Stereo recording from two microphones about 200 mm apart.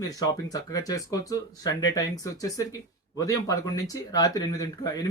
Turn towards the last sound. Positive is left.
turn(degrees=20)  # may be behind; listen again after turning